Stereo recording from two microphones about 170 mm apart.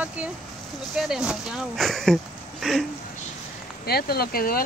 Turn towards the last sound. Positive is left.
turn(degrees=60)  # may be behind; listen again after turning